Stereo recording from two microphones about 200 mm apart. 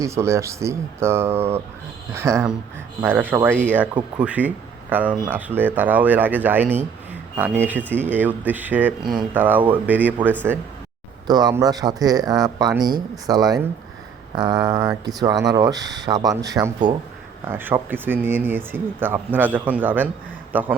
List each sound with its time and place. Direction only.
0.0 s speech: 15° right (ahead or behind)